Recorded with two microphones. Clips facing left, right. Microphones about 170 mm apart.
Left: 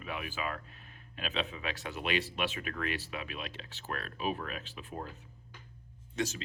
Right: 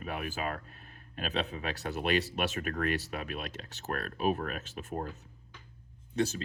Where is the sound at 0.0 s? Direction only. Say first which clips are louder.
Right 3 dB; 45° right (ahead or behind).